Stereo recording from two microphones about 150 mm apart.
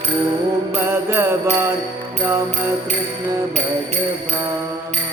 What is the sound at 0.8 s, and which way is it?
Music, 15° right (ahead or behind).